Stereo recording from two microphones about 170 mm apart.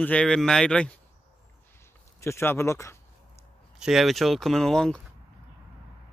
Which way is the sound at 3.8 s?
Centre (ahead or behind).